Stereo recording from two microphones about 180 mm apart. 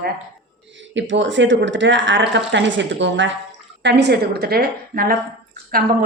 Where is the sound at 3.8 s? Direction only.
70° right (ahead or behind).